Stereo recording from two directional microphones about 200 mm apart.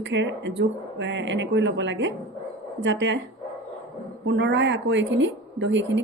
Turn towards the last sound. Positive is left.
turn(degrees=-65)  # may be behind; listen again after turning